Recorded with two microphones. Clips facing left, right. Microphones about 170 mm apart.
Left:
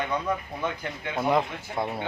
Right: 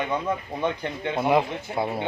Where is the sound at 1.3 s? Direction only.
5° right (ahead or behind).